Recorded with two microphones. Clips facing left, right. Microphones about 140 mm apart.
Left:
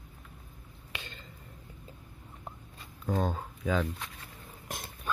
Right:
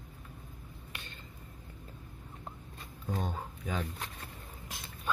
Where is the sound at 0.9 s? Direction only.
90° left.